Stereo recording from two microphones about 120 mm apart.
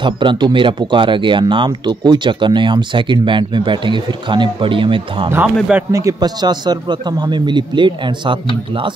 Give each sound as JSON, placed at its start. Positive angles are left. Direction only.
{"t": 0.0, "sound": "speech", "side_deg": -45}
{"t": 5.3, "sound": "speech", "side_deg": -15}
{"t": 5.9, "sound": "a man's voice", "side_deg": -25}